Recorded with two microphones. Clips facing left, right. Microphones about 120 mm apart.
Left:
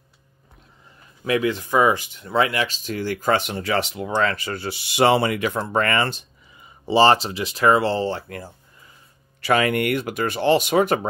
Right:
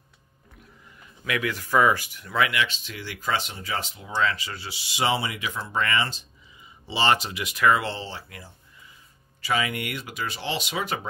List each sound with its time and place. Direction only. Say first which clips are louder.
1.2 s speech: left 7 dB; 30° left (ahead or behind)
8.0 s speech: left 12 dB; 50° left (ahead or behind)